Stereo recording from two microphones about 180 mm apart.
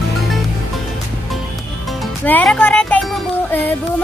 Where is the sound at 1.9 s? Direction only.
5° left (ahead or behind).